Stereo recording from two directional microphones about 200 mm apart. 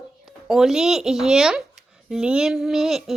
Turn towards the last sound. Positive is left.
turn(degrees=0)  # may be behind; listen again after turning